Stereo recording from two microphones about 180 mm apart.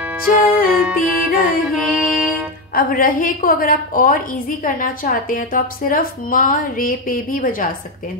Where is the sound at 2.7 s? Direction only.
50° left (ahead or behind).